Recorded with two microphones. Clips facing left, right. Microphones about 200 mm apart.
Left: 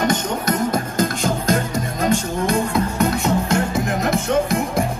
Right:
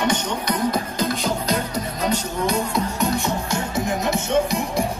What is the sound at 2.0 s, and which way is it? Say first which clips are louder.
Music: left 3 dB; 50° left (ahead or behind).